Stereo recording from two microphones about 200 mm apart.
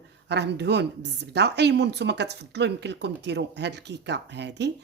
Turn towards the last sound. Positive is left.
turn(degrees=-60)  # may be behind; listen again after turning